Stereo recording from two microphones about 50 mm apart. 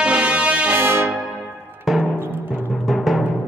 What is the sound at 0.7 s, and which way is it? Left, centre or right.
Music, right.